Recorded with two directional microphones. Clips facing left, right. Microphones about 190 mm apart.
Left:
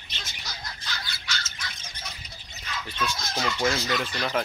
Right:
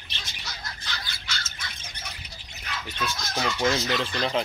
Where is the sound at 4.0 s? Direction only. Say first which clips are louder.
Right 2 dB; 25° right (ahead or behind).